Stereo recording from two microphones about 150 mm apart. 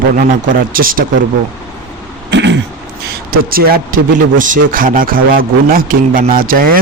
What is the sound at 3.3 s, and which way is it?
A man's voice, 80° right.